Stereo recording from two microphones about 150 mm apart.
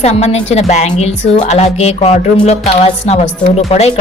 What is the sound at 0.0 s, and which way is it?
A woman's voice, 45° left (ahead or behind).